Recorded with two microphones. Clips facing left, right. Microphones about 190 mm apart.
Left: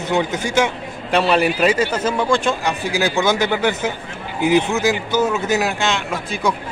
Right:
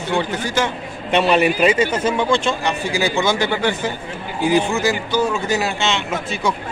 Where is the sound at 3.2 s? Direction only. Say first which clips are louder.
Left 1 dB; 10° left (ahead or behind).